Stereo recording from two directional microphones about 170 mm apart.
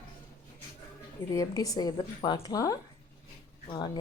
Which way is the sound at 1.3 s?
20° left (ahead or behind).